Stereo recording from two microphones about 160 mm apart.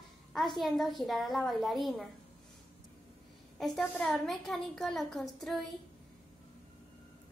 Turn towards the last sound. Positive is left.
turn(degrees=0)  # may be behind; listen again after turning